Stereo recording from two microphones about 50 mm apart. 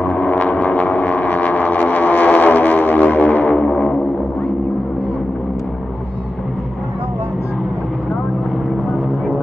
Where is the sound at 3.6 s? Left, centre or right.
Left.